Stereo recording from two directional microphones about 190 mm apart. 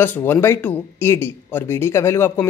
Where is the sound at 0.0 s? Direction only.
10° left (ahead or behind).